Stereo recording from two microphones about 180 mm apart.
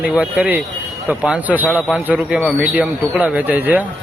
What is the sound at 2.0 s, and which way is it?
Speech, 5° right (ahead or behind).